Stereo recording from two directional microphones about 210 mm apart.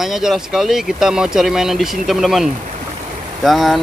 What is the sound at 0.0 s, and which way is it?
Speech, centre (ahead or behind).